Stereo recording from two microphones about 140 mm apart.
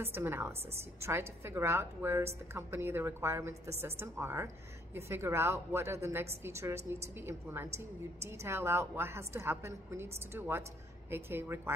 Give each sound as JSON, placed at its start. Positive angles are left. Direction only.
{"t": 0.0, "sound": "a woman's voice", "side_deg": -15}